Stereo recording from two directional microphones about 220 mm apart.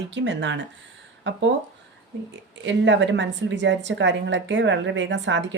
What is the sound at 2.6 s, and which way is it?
A woman's voice, 55° right (ahead or behind).